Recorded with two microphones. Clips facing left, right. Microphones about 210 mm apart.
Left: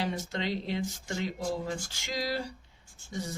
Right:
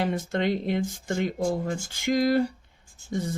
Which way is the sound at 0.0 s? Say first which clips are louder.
Right 7 dB; 50° right (ahead or behind).